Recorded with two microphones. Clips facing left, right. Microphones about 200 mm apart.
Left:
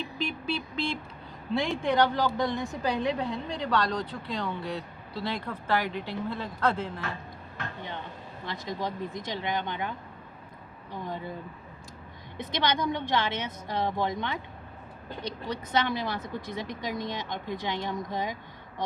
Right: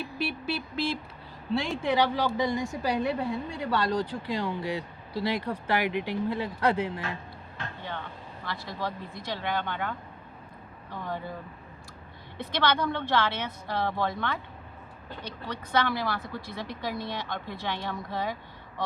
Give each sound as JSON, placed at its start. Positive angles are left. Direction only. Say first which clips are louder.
{"t": 0.0, "sound": "vehicle", "louder": "right 1 dB", "side_deg": -5}
{"t": 1.6, "sound": "a woman's voice", "louder": "left 2 dB", "side_deg": -5}
{"t": 8.4, "sound": "a woman's voice", "louder": "left 1 dB", "side_deg": 15}
{"t": 12.4, "sound": "a woman's voice", "louder": "right 1 dB", "side_deg": 15}
{"t": 15.7, "sound": "a woman's voice", "louder": "right 1 dB", "side_deg": 20}